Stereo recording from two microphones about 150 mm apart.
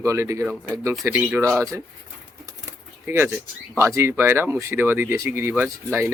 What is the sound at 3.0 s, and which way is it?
Speech, 15° right (ahead or behind).